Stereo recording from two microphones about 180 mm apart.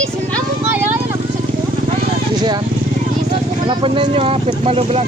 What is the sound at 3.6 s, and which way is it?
Speech, 30° right (ahead or behind).